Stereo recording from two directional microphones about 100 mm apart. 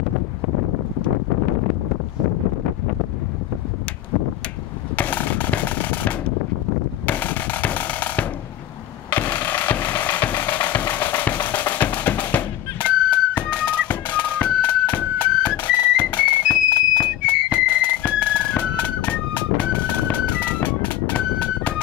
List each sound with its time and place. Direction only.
4.9 s a sound: 15° left (ahead or behind)
7.1 s drum: 15° left (ahead or behind)
9.1 s music: 15° left (ahead or behind)